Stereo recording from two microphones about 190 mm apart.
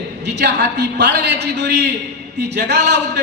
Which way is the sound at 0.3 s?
60° right (ahead or behind).